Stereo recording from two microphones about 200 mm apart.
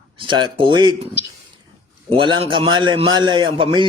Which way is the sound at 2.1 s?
25° right (ahead or behind).